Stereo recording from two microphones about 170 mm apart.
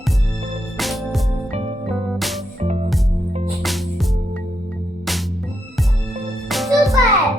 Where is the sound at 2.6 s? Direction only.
40° right (ahead or behind).